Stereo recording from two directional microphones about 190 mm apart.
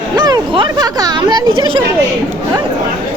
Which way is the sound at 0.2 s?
25° right (ahead or behind).